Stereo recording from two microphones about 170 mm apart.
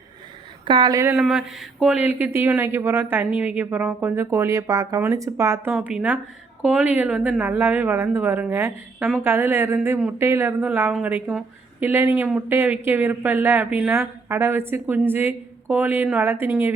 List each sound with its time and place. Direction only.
0.6 s speech: 25° right (ahead or behind)
1.1 s a woman's voice: 5° right (ahead or behind)